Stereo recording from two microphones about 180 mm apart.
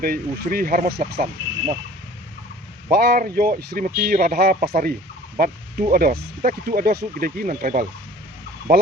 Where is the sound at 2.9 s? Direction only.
55° right (ahead or behind).